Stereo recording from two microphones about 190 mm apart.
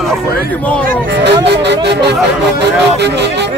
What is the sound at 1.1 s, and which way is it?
Speech, 65° right (ahead or behind).